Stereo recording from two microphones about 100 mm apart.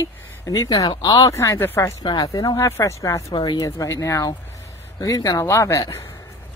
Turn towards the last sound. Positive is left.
turn(degrees=30)  # may be behind; listen again after turning